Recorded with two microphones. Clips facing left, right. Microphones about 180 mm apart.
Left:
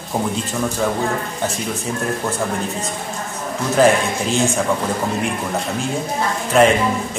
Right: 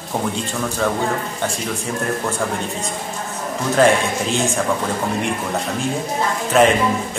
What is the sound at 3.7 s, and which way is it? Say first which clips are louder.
Speech: left 1 dB; centre (ahead or behind).